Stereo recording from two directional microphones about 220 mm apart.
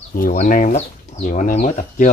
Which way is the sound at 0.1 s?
40° left (ahead or behind).